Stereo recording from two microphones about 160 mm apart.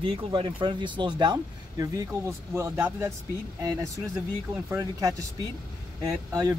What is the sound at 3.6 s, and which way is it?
Speech, 20° right (ahead or behind).